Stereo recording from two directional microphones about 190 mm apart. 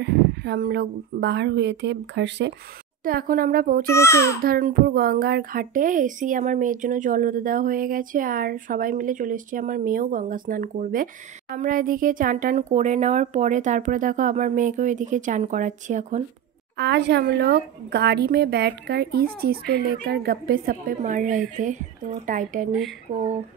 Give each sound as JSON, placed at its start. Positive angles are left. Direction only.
{"t": 0.0, "sound": "speech", "side_deg": -60}
{"t": 3.0, "sound": "a woman's voice", "side_deg": -50}
{"t": 3.9, "sound": "a child's voice", "side_deg": 15}
{"t": 4.5, "sound": "a woman's voice", "side_deg": -50}
{"t": 16.7, "sound": "a woman's voice", "side_deg": -65}